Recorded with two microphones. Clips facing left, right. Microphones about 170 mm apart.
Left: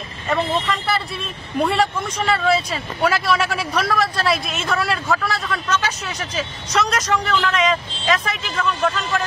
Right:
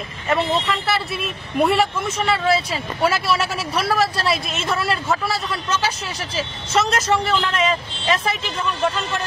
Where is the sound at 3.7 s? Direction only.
30° right (ahead or behind).